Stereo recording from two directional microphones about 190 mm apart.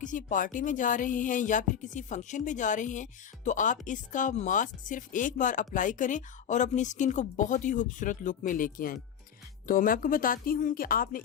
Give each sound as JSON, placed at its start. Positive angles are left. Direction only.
{"t": 0.0, "sound": "speech", "side_deg": 40}